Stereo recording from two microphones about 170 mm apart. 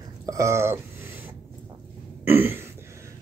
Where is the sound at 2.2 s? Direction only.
10° right (ahead or behind).